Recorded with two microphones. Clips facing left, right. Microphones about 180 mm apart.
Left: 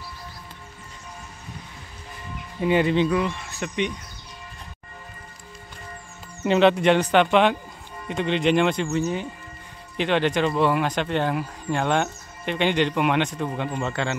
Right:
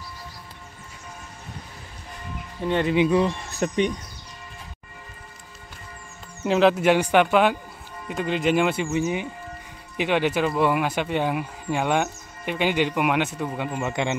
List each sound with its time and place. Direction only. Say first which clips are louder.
2.6 s speech: left 3 dB; 5° left (ahead or behind)
3.3 s speech: right 4 dB; 40° right (ahead or behind)
6.4 s speech: left 1 dB; centre (ahead or behind)